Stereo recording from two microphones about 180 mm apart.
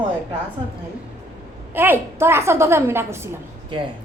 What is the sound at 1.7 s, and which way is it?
A woman's voice, 10° right (ahead or behind).